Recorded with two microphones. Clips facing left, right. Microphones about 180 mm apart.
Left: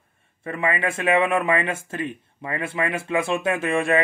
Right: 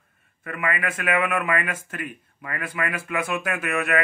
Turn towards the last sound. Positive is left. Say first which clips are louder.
# left 4 dB
turn(degrees=30)  # may be behind; listen again after turning